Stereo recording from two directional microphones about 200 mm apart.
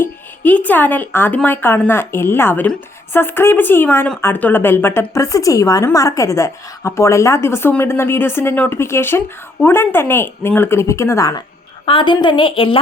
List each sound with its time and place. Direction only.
0.0 s a woman's voice: 10° left (ahead or behind); by 12.8 s 25° left (ahead or behind)